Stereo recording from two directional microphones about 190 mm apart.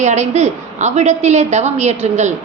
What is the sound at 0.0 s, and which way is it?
A woman's voice, 40° right (ahead or behind).